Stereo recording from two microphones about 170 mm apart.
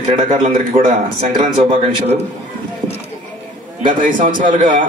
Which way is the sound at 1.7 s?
35° right (ahead or behind).